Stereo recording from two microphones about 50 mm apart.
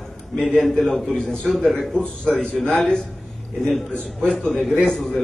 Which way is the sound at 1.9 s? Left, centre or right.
Left.